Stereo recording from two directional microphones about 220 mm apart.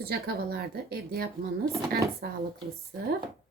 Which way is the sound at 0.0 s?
45° right (ahead or behind).